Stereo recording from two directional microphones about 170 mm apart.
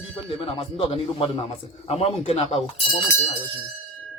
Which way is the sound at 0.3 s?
35° left (ahead or behind).